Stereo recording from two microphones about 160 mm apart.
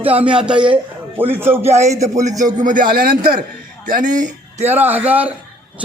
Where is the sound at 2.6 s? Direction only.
55° right (ahead or behind).